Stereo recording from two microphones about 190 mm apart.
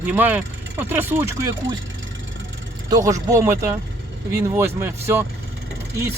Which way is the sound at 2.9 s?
20° right (ahead or behind).